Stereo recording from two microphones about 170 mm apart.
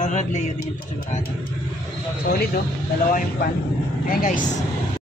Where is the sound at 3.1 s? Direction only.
55° left (ahead or behind).